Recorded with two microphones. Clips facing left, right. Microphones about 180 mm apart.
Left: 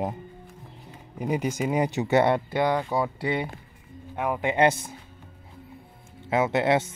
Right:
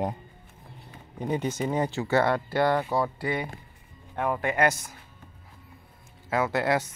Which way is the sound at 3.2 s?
25° left (ahead or behind).